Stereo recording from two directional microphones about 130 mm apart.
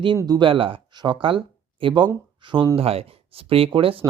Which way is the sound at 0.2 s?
35° right (ahead or behind).